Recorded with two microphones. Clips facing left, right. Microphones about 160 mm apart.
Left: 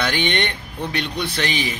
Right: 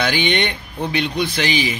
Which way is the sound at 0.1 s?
90° right.